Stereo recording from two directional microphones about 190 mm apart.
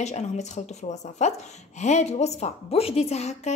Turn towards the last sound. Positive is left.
turn(degrees=35)  # may be behind; listen again after turning